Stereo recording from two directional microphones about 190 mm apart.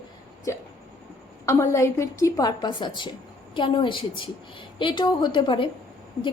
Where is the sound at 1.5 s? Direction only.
15° left (ahead or behind).